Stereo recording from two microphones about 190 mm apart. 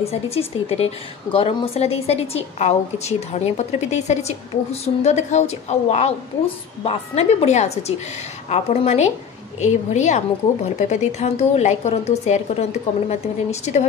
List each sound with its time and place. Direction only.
0.0 s a woman's voice: 30° left (ahead or behind)